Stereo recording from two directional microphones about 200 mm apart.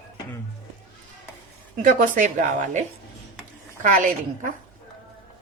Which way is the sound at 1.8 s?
40° right (ahead or behind).